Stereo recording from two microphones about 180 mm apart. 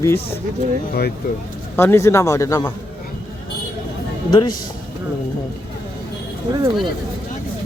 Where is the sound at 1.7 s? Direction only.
15° left (ahead or behind).